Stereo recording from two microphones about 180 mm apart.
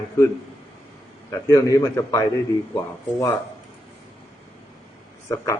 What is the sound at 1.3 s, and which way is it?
A man's voice, 20° left (ahead or behind).